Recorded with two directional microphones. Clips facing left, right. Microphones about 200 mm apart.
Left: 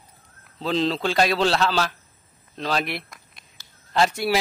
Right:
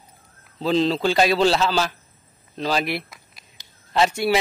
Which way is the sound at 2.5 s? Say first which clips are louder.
Right 3 dB; centre (ahead or behind).